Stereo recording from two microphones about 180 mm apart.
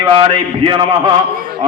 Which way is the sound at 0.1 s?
25° right (ahead or behind).